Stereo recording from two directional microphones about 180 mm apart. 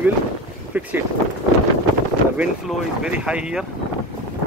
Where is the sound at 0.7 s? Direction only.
10° right (ahead or behind).